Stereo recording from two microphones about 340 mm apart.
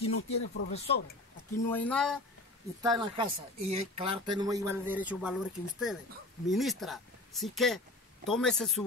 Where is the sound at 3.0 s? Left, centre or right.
Centre.